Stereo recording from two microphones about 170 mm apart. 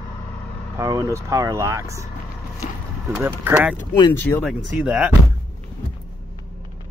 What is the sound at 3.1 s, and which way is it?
Speech, 10° right (ahead or behind).